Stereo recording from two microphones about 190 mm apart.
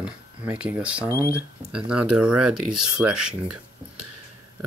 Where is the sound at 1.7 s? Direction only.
5° right (ahead or behind).